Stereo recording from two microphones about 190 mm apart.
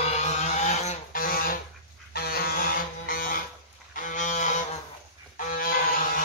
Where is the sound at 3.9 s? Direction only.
45° left (ahead or behind).